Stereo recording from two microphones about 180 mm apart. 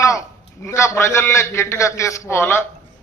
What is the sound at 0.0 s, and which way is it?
A man's voice, 15° left (ahead or behind).